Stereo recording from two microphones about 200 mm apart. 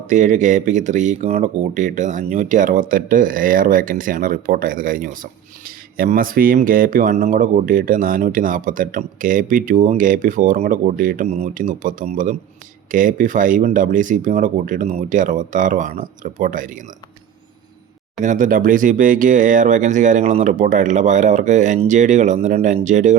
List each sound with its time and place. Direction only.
0.1 s speech: 40° right (ahead or behind)
18.2 s speech: 40° right (ahead or behind)